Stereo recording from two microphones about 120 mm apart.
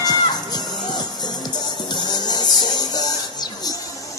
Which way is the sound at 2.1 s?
35° left (ahead or behind).